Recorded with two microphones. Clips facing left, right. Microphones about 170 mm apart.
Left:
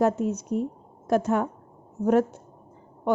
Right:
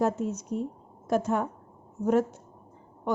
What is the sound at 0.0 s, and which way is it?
A woman's voice, 65° left (ahead or behind).